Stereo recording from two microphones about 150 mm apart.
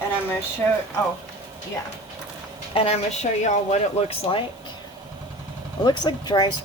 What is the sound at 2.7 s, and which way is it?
Speech, 45° left (ahead or behind).